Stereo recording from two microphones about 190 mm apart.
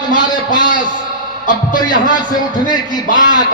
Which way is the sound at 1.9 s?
45° left (ahead or behind).